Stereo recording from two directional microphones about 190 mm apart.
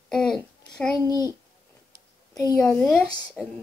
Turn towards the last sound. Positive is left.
turn(degrees=5)  # may be behind; listen again after turning